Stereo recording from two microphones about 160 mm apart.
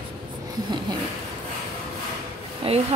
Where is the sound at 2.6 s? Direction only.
40° right (ahead or behind).